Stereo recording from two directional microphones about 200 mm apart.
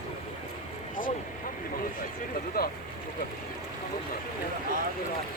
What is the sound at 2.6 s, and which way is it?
Speech, 50° left (ahead or behind).